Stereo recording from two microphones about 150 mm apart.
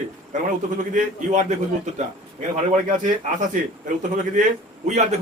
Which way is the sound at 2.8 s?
60° right (ahead or behind).